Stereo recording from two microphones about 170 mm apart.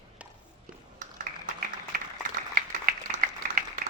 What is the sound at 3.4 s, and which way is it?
Applause, 55° right (ahead or behind).